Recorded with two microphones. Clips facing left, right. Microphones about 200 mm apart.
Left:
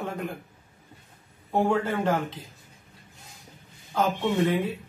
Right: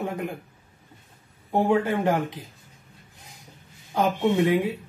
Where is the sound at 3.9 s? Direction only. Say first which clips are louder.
Right 3 dB; 15° right (ahead or behind).